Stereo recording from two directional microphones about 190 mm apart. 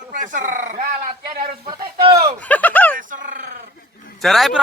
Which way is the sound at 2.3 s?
10° left (ahead or behind).